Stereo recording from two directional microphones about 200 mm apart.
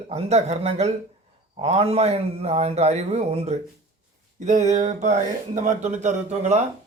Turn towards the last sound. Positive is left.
turn(degrees=-35)  # may be behind; listen again after turning